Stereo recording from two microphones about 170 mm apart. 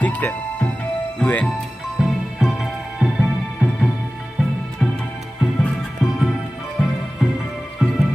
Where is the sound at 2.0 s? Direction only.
Centre (ahead or behind).